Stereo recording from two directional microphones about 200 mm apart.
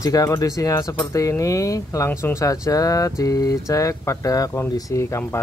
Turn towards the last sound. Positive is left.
turn(degrees=15)  # may be behind; listen again after turning